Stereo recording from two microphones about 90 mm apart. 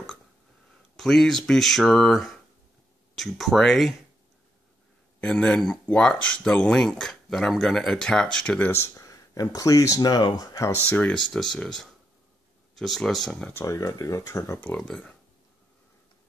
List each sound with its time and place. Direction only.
0.9 s speech: 5° left (ahead or behind)
5.2 s speech: 10° left (ahead or behind)
8.7 s speech: 35° left (ahead or behind)
10.9 s speech: 15° left (ahead or behind)
13.5 s speech: 35° left (ahead or behind)
14.7 s speech: 15° left (ahead or behind)